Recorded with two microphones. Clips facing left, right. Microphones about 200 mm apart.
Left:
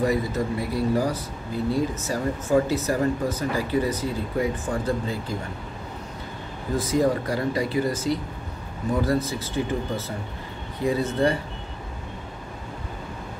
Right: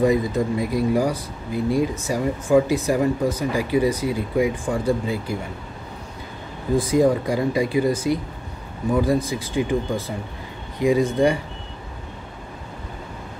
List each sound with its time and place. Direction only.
0.0 s speech: 15° right (ahead or behind)
6.7 s speech: 15° right (ahead or behind)